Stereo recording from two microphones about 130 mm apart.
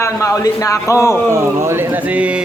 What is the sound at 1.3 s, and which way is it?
Speech, 20° right (ahead or behind).